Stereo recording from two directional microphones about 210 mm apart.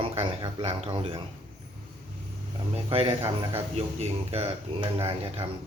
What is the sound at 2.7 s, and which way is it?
Speech, 25° right (ahead or behind).